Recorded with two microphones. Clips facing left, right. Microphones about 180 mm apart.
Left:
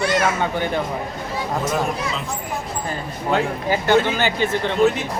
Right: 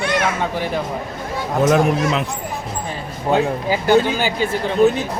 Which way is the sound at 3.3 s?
15° right (ahead or behind).